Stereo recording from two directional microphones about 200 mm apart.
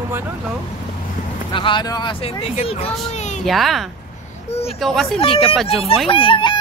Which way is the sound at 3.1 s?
35° left (ahead or behind).